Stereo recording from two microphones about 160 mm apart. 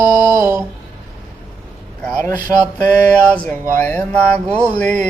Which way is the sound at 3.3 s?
10° left (ahead or behind).